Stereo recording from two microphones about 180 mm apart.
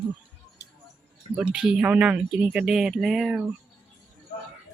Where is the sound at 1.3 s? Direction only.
5° right (ahead or behind).